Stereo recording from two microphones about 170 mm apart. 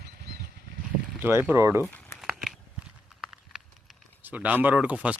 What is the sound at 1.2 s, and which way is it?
Speech, 15° right (ahead or behind).